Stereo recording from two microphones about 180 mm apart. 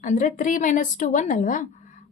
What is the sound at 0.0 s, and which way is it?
Speech, 45° left (ahead or behind).